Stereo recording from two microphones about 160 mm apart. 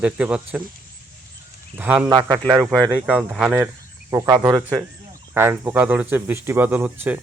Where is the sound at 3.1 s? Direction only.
5° right (ahead or behind).